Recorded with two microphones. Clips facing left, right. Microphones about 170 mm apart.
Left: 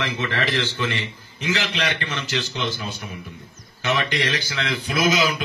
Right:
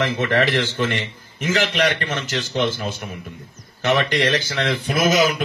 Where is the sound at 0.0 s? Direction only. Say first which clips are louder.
Right 6 dB; 50° right (ahead or behind).